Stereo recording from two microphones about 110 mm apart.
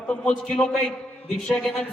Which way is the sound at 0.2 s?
10° left (ahead or behind).